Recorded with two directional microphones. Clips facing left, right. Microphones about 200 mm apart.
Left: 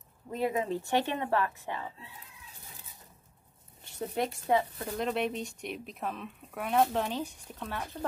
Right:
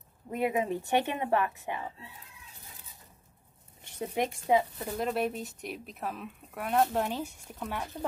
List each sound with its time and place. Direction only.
0.3 s a woman's voice: 15° right (ahead or behind)
4.0 s speech: 15° right (ahead or behind)